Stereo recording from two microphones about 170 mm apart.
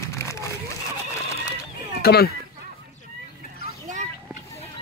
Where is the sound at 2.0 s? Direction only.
65° left (ahead or behind).